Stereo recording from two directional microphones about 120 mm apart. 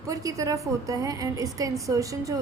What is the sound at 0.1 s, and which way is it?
A woman's voice, 25° right (ahead or behind).